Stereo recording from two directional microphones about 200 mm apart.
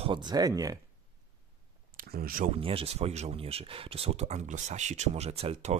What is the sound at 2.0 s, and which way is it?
Speech, 45° right (ahead or behind).